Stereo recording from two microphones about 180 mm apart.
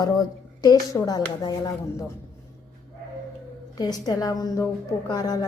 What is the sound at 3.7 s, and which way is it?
A woman's voice, 20° left (ahead or behind).